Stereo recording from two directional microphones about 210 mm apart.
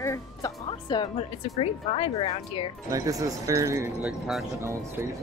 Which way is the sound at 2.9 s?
15° right (ahead or behind).